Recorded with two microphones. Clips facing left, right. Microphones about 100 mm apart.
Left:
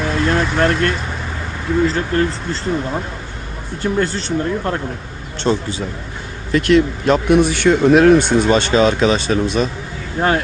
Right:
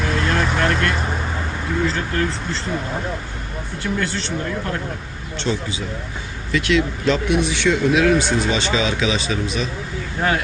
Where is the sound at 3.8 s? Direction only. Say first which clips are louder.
Left 5 dB; 40° left (ahead or behind).